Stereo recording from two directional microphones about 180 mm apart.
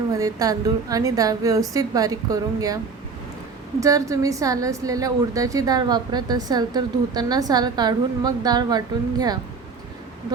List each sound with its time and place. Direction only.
0.1 s a woman's voice: 20° right (ahead or behind)
3.8 s a woman's voice: 20° right (ahead or behind)